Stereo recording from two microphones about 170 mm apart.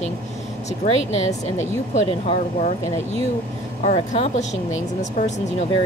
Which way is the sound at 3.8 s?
40° left (ahead or behind).